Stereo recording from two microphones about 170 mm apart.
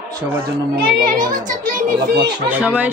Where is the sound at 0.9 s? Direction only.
55° right (ahead or behind).